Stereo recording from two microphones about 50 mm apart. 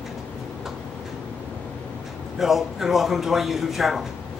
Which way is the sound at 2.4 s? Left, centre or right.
Centre.